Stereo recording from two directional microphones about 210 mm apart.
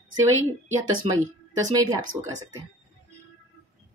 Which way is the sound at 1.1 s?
25° right (ahead or behind).